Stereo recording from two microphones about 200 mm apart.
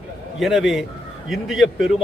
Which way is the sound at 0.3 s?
Centre (ahead or behind).